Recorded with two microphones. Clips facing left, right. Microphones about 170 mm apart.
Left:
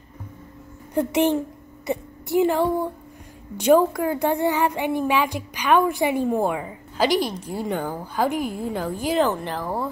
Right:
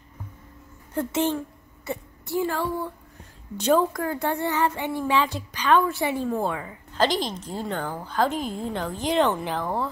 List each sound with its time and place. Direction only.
0.9 s a woman's voice: 15° left (ahead or behind)